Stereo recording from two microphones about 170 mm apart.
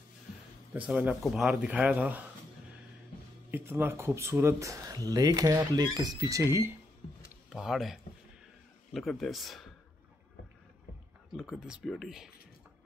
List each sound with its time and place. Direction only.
0.7 s speech: 10° right (ahead or behind)
3.5 s speech: 15° right (ahead or behind)
7.4 s speech: 5° right (ahead or behind)
11.3 s speech: 5° right (ahead or behind)